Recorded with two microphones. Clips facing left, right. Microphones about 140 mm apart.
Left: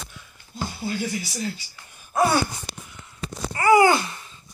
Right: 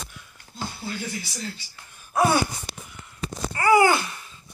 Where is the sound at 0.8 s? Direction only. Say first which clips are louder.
Left 7 dB; 20° left (ahead or behind).